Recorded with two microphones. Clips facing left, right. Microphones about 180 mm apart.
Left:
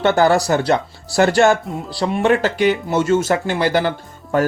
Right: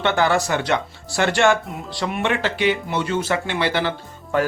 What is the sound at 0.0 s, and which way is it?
Speech, 40° left (ahead or behind).